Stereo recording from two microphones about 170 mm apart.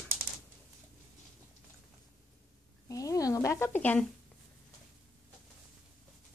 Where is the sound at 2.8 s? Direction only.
20° left (ahead or behind).